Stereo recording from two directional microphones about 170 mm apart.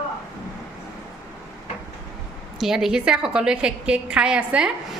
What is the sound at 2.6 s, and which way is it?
A woman's voice, centre (ahead or behind).